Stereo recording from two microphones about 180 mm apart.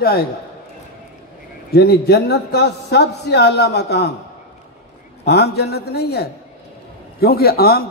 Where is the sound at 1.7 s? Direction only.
65° left (ahead or behind).